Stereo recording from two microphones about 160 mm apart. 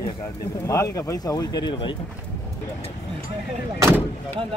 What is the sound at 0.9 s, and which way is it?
Speech, 20° left (ahead or behind).